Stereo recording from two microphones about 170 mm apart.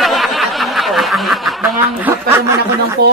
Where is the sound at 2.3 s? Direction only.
15° right (ahead or behind).